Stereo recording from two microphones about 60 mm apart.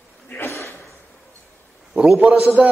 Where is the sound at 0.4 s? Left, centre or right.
Left.